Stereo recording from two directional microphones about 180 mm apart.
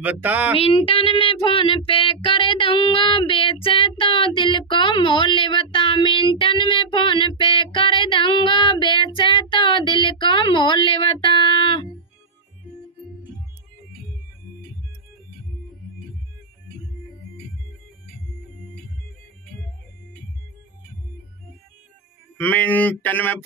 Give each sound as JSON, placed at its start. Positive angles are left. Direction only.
{"t": 0.0, "sound": "speech", "side_deg": -10}
{"t": 0.6, "sound": "child singing", "side_deg": 30}
{"t": 22.4, "sound": "speech", "side_deg": 10}